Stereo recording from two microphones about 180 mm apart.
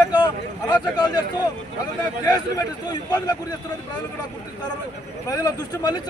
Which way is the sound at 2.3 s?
20° left (ahead or behind).